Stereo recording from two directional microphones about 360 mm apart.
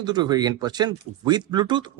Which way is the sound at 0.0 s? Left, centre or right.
Centre.